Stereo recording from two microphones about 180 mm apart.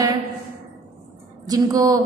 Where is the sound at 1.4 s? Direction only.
20° right (ahead or behind).